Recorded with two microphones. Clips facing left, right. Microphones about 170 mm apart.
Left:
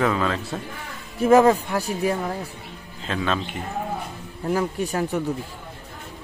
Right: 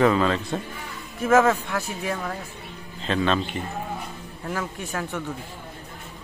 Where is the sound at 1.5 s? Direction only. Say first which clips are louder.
Left 4 dB; 35° left (ahead or behind).